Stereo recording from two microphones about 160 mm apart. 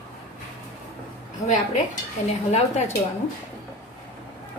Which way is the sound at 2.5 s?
45° left (ahead or behind).